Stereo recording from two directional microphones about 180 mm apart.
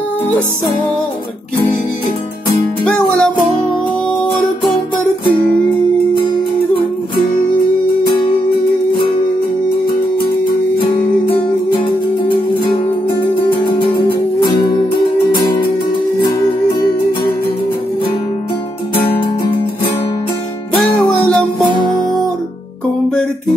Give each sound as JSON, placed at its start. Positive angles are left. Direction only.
{"t": 2.8, "sound": "music", "side_deg": 5}
{"t": 10.8, "sound": "music", "side_deg": 30}
{"t": 13.7, "sound": "music", "side_deg": 25}
{"t": 19.0, "sound": "music", "side_deg": 30}